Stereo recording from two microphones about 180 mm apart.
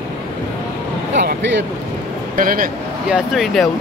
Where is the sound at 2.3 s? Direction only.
50° right (ahead or behind).